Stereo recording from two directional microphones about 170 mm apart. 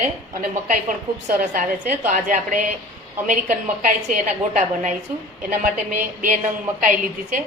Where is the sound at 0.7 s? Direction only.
55° right (ahead or behind).